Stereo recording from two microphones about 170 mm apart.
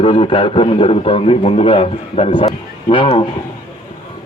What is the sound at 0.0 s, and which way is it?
A man's voice, 35° left (ahead or behind).